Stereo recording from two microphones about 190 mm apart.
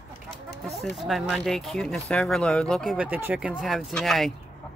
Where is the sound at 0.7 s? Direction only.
Centre (ahead or behind).